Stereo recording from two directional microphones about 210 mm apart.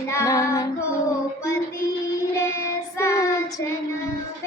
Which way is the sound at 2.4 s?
15° left (ahead or behind).